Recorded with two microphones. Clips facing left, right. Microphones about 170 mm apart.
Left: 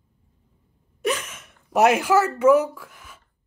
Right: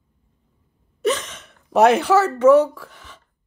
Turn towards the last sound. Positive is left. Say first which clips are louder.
# right 3 dB
turn(degrees=10)  # may be behind; listen again after turning